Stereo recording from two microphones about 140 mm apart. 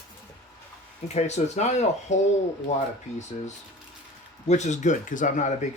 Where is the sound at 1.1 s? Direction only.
50° left (ahead or behind).